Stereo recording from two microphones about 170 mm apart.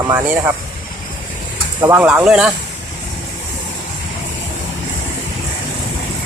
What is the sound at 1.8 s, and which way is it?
Speech, 10° right (ahead or behind).